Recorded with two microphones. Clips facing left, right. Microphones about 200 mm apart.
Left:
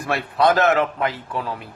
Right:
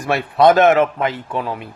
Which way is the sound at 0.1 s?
20° right (ahead or behind).